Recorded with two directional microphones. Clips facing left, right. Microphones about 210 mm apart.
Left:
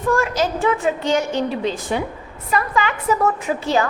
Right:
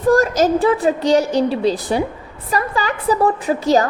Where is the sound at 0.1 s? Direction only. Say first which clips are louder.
Right 6 dB; 40° right (ahead or behind).